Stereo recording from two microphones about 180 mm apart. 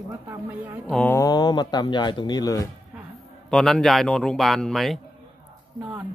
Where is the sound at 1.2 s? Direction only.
20° left (ahead or behind).